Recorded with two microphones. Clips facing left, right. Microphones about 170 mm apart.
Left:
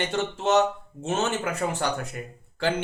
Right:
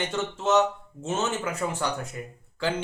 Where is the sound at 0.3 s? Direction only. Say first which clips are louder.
Even; 65° left (ahead or behind).